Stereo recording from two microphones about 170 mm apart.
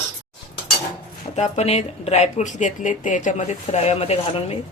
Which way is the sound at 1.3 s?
40° left (ahead or behind).